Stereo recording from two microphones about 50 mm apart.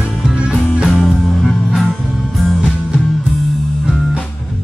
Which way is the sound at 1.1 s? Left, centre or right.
Centre.